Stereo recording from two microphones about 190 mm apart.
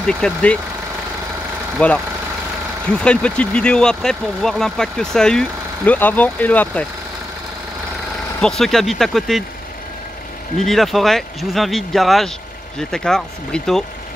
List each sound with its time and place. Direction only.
0.0 s speech: 5° left (ahead or behind)
1.8 s speech: 5° left (ahead or behind)
8.4 s speech: centre (ahead or behind)
10.6 s speech: centre (ahead or behind)